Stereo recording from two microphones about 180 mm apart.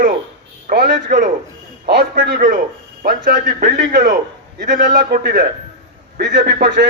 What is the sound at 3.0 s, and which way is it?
Speech, 60° right (ahead or behind).